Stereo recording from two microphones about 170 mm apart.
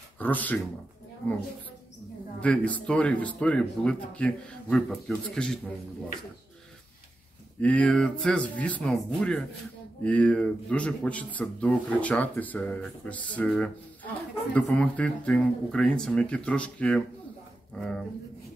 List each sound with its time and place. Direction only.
0.2 s speech: 10° left (ahead or behind)
2.4 s speech: 5° left (ahead or behind)
7.6 s speech: 5° left (ahead or behind)